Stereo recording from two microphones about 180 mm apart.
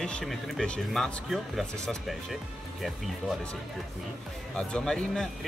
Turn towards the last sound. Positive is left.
turn(degrees=5)  # may be behind; listen again after turning